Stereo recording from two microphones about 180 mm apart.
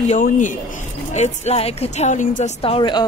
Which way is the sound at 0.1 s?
45° left (ahead or behind).